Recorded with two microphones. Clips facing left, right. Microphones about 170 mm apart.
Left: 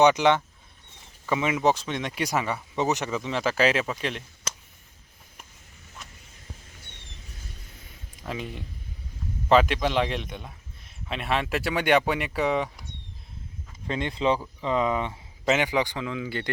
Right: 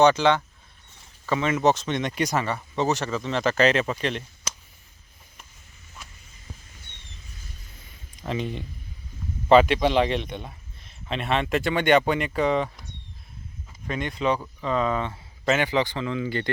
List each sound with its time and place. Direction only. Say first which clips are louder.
0.0 s speech: right 1 dB; 15° left (ahead or behind)
8.3 s a man's voice: right 5 dB; 5° left (ahead or behind)
13.8 s speech: even; 25° left (ahead or behind); by 16.5 s 5° left (ahead or behind)